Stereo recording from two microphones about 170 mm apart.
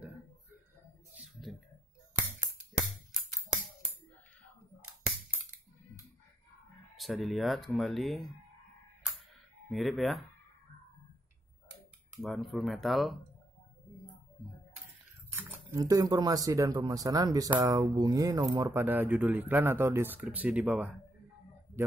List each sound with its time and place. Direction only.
7.0 s speech: centre (ahead or behind)
9.7 s speech: centre (ahead or behind)
12.2 s speech: centre (ahead or behind)
15.3 s speech: 20° right (ahead or behind)